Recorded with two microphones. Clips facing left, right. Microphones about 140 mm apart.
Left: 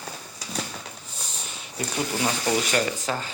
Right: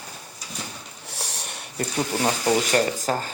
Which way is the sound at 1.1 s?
75° right (ahead or behind).